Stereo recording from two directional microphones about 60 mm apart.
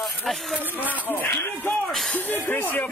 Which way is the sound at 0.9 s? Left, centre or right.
Left.